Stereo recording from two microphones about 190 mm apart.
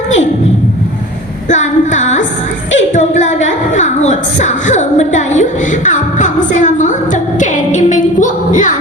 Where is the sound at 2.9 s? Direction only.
40° left (ahead or behind).